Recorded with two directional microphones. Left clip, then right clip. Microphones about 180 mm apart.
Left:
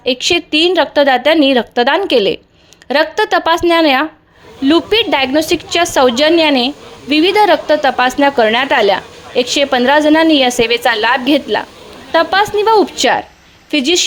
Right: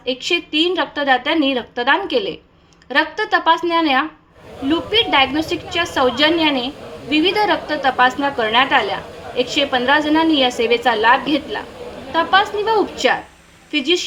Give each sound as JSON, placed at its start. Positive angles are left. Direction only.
{"t": 0.0, "sound": "a woman's voice", "side_deg": 50}